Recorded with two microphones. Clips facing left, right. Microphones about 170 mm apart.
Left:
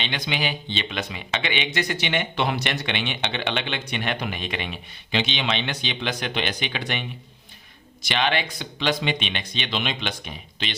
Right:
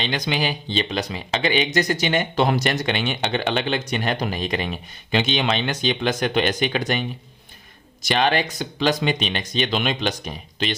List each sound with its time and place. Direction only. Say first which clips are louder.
0.0 s speech: right 4 dB; 40° right (ahead or behind)
8.0 s speech: right 4 dB; 40° right (ahead or behind)